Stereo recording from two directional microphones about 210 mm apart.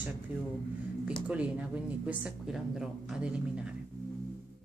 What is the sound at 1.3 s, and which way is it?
Speech, 5° right (ahead or behind).